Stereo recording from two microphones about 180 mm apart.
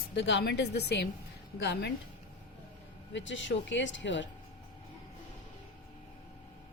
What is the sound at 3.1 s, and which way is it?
Speech, 90° left.